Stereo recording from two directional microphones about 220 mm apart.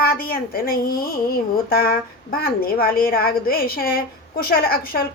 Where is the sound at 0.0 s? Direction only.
40° left (ahead or behind).